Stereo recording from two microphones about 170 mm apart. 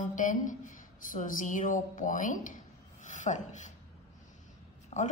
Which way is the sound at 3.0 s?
45° left (ahead or behind).